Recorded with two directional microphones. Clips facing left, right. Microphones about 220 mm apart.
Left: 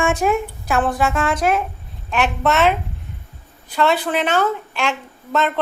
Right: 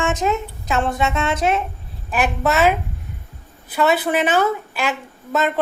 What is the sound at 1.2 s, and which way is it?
Speech, 25° right (ahead or behind).